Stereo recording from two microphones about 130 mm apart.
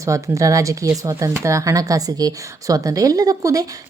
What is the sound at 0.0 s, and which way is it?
Speech, 25° right (ahead or behind).